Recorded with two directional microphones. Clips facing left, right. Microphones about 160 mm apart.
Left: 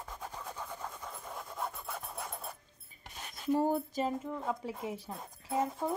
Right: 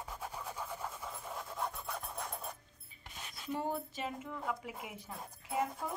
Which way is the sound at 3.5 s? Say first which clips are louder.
Left 8 dB; 40° left (ahead or behind).